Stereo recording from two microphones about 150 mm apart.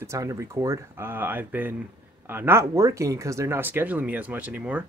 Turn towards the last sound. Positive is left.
turn(degrees=-10)  # may be behind; listen again after turning